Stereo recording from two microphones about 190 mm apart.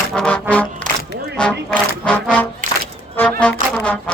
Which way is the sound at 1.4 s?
5° left (ahead or behind).